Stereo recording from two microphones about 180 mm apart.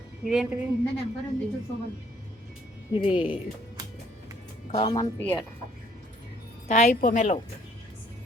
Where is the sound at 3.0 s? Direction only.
30° left (ahead or behind).